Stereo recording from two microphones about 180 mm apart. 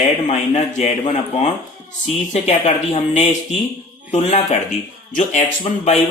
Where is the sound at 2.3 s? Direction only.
35° left (ahead or behind).